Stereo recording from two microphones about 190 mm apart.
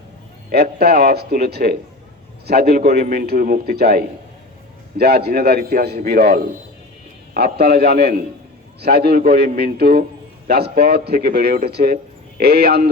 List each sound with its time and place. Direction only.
0.5 s a man's voice: 55° right (ahead or behind)